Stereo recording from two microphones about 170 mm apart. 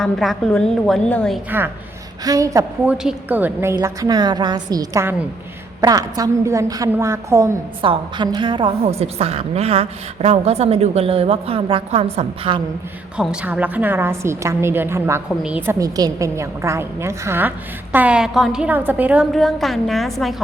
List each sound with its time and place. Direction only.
0.0 s a woman's voice: centre (ahead or behind)
1.5 s a woman's voice: 10° right (ahead or behind)
3.0 s a woman's voice: 5° right (ahead or behind)
7.8 s a woman's voice: 30° right (ahead or behind)
13.1 s a woman's voice: 10° right (ahead or behind)